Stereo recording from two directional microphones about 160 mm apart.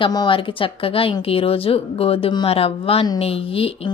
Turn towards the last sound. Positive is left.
turn(degrees=35)  # may be behind; listen again after turning